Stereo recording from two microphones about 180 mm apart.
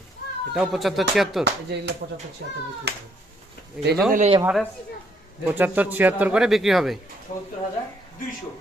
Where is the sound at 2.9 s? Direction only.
70° right (ahead or behind).